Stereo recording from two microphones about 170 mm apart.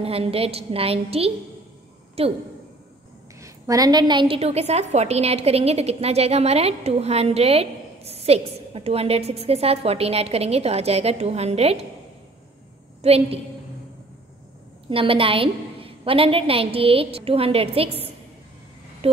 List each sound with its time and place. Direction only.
0.0 s a woman's voice: 35° right (ahead or behind)
3.3 s a woman's voice: 20° right (ahead or behind); by 11.8 s 40° right (ahead or behind)
13.0 s a woman's voice: 35° right (ahead or behind)
14.9 s a woman's voice: 30° right (ahead or behind)